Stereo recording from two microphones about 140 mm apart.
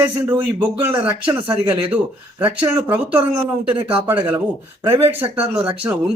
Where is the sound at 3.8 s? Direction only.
35° right (ahead or behind).